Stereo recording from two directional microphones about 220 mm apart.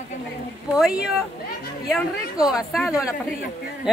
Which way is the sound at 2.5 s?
Centre (ahead or behind).